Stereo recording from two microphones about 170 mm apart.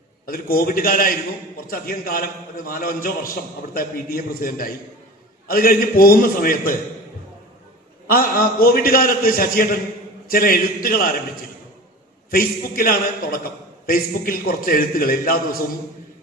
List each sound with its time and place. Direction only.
0.3 s a man's voice: 60° left (ahead or behind)
8.0 s a man's voice: 60° left (ahead or behind)
12.3 s a man's voice: 60° left (ahead or behind)